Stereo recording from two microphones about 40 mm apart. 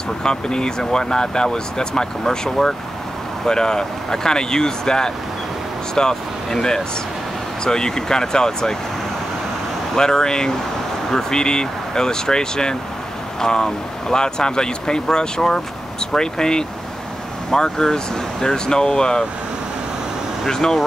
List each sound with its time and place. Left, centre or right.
0.2 s speech: centre
9.9 s speech: centre
20.4 s speech: centre